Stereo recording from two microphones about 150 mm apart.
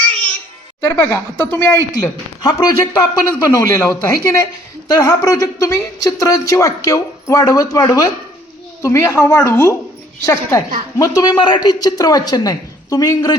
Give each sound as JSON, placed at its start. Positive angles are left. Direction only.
{"t": 0.9, "sound": "speech", "side_deg": 15}
{"t": 2.0, "sound": "speech", "side_deg": 25}